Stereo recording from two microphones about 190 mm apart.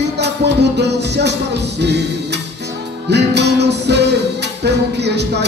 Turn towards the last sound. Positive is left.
turn(degrees=-65)  # may be behind; listen again after turning